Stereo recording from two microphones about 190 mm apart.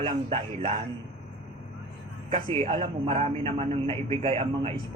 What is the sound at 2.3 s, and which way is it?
A man's voice, 30° right (ahead or behind).